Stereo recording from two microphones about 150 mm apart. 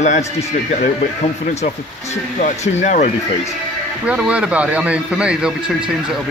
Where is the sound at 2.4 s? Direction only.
50° left (ahead or behind).